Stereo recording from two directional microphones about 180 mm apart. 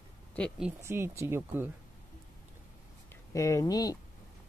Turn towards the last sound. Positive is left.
turn(degrees=20)  # may be behind; listen again after turning